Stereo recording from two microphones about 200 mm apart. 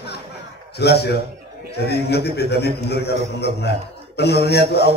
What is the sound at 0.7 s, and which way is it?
Speech, 55° left (ahead or behind).